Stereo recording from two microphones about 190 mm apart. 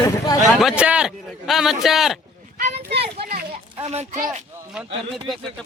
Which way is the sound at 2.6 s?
40° right (ahead or behind).